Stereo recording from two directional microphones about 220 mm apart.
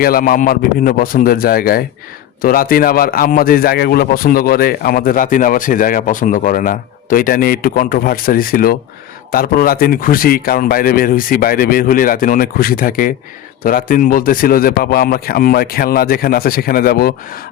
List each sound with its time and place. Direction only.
0.0 s a man's voice: 40° left (ahead or behind)